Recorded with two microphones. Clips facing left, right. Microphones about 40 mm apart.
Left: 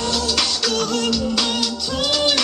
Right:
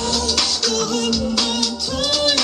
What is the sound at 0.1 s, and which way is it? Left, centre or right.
Music, centre.